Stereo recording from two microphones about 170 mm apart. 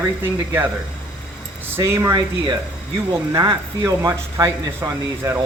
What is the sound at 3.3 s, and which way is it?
Speech, 20° right (ahead or behind).